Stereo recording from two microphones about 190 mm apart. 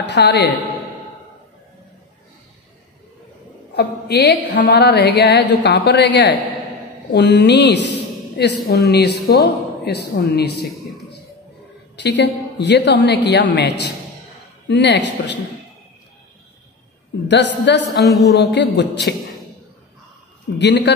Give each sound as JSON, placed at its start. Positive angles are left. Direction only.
{"t": 0.0, "sound": "a woman's voice", "side_deg": 65}
{"t": 3.7, "sound": "a woman's voice", "side_deg": 60}
{"t": 12.0, "sound": "a woman's voice", "side_deg": 65}
{"t": 17.7, "sound": "a woman's voice", "side_deg": 65}
{"t": 18.0, "sound": "speech", "side_deg": 0}
{"t": 18.4, "sound": "a woman's voice", "side_deg": 65}
{"t": 20.5, "sound": "a woman's voice", "side_deg": 65}